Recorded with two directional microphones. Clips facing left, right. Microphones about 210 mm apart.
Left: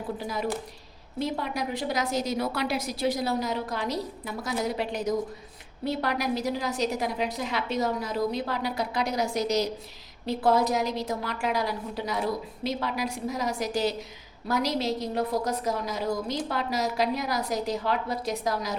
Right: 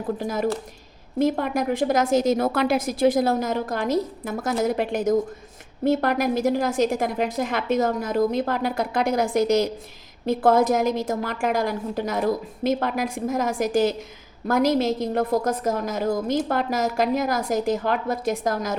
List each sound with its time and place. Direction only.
0.2 s a woman's voice: 45° right (ahead or behind)